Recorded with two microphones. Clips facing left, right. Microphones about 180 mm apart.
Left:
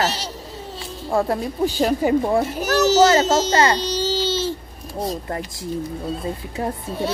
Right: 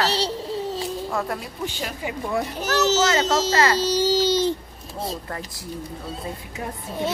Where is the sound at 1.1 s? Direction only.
30° left (ahead or behind).